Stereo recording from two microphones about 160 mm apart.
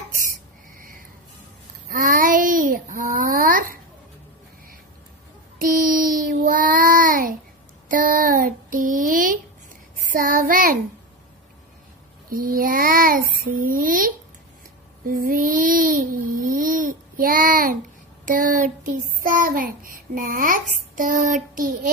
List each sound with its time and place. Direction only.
1.9 s babbling: 60° right (ahead or behind)
5.6 s child singing: 60° right (ahead or behind)
12.3 s child singing: 60° right (ahead or behind)
15.0 s a sound: 60° right (ahead or behind)
19.2 s child singing: 60° right (ahead or behind)